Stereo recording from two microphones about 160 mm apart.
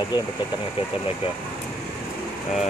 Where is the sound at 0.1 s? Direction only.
25° left (ahead or behind).